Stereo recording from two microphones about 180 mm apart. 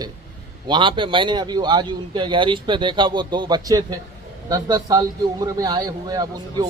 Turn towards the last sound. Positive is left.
turn(degrees=-20)  # may be behind; listen again after turning